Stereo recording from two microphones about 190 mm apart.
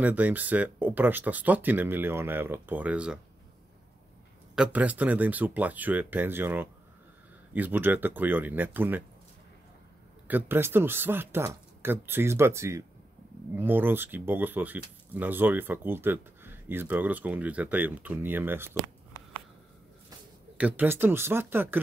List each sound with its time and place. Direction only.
0.0 s speech: 10° right (ahead or behind)
4.6 s speech: 5° right (ahead or behind)
10.2 s speech: 10° right (ahead or behind)
20.5 s speech: 10° right (ahead or behind)